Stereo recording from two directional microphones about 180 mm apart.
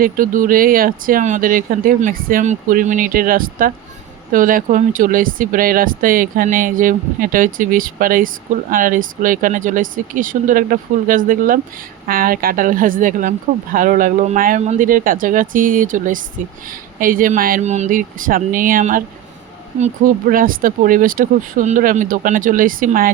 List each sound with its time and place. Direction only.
0.0 s speech: 50° right (ahead or behind)